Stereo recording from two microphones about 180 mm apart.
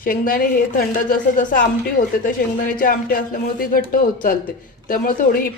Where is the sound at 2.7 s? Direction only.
50° left (ahead or behind).